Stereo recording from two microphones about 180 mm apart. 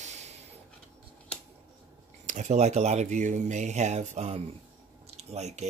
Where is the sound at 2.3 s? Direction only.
40° right (ahead or behind).